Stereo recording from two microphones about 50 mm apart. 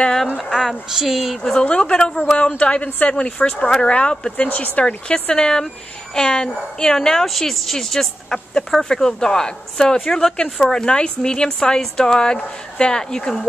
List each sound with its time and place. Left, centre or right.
0.6 s a woman's voice: centre
1.4 s a woman's voice: centre
2.6 s speech: left
4.5 s speech: left
5.3 s a woman's voice: centre
10.3 s a woman's voice: centre